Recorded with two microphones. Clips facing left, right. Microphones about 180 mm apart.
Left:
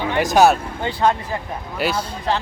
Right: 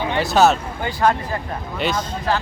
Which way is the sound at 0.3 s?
10° left (ahead or behind).